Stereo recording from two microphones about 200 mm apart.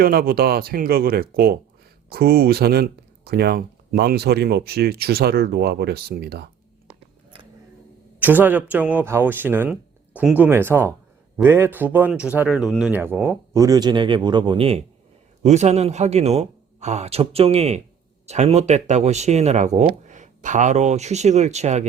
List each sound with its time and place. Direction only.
0.0 s speech: 45° right (ahead or behind)
8.2 s speech: 10° right (ahead or behind); by 21.8 s 35° right (ahead or behind)